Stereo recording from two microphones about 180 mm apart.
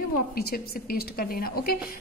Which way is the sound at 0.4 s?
60° left (ahead or behind).